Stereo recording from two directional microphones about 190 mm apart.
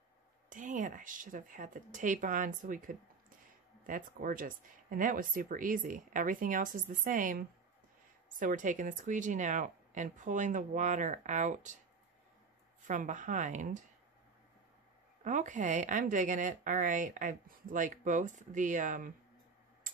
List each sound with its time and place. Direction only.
0.5 s speech: 45° right (ahead or behind)
12.8 s speech: 40° right (ahead or behind)
15.2 s speech: 40° right (ahead or behind)